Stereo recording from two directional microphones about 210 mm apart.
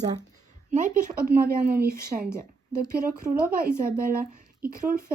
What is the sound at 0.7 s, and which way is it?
Speech, 40° right (ahead or behind).